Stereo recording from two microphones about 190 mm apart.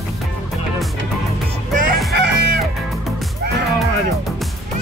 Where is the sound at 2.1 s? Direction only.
65° right (ahead or behind).